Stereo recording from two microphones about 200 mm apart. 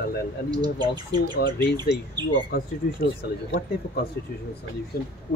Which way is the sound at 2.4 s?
50° left (ahead or behind).